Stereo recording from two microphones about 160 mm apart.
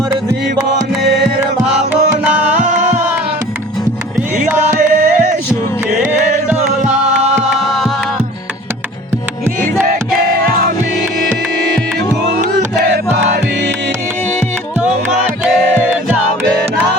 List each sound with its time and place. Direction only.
1.6 s music: 5° right (ahead or behind)
2.5 s music: 50° right (ahead or behind)
4.7 s music: 55° right (ahead or behind)
6.5 s music: 5° right (ahead or behind)
7.2 s music: 45° right (ahead or behind)
7.7 s music: centre (ahead or behind)